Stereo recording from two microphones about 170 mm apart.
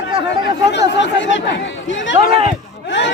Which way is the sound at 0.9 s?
90° left.